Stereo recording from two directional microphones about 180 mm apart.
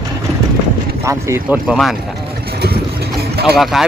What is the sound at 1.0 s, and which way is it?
Speech, 15° right (ahead or behind).